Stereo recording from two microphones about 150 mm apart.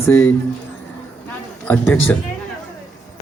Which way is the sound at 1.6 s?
15° left (ahead or behind).